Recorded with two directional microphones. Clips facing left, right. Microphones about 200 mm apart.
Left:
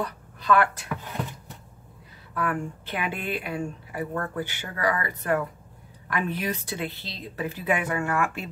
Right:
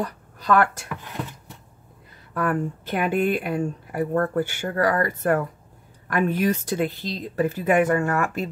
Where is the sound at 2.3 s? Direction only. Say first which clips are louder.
Right 4 dB; 45° right (ahead or behind).